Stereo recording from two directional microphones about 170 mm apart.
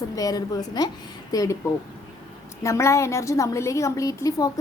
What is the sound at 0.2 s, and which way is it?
A woman's voice, 20° left (ahead or behind).